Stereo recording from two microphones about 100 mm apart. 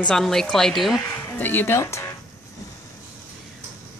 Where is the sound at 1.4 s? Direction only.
20° left (ahead or behind).